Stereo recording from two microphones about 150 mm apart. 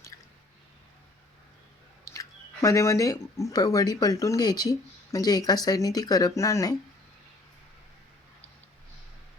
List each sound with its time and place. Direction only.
2.0 s speech: 20° left (ahead or behind)